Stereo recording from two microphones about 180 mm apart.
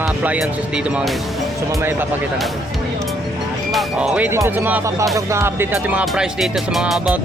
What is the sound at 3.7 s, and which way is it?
Speech, centre (ahead or behind).